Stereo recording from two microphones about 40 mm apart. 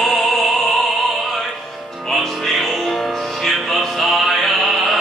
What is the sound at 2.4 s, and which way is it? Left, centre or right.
Music, centre.